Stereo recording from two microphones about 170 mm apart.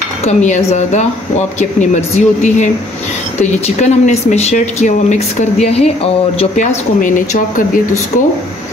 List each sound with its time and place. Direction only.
0.2 s speech: 45° left (ahead or behind)